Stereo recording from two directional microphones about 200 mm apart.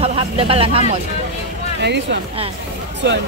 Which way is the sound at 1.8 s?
60° right (ahead or behind).